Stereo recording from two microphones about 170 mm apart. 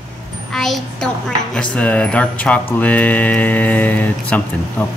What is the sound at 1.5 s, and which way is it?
Mantra, 5° left (ahead or behind).